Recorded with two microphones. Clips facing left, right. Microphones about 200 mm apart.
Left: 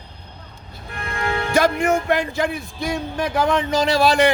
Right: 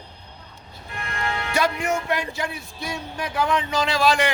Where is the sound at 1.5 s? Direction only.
50° left (ahead or behind).